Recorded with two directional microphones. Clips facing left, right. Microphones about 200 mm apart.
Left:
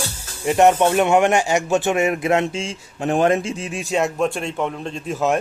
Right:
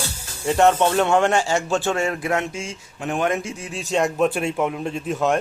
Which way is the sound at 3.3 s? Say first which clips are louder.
Left 4 dB; 20° left (ahead or behind).